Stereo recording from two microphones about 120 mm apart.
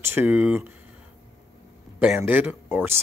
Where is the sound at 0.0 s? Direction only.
20° right (ahead or behind).